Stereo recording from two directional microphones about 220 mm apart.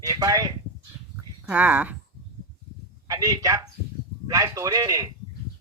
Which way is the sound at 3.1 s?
15° right (ahead or behind).